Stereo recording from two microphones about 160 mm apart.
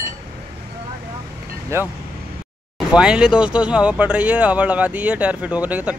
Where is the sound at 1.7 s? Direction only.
15° right (ahead or behind).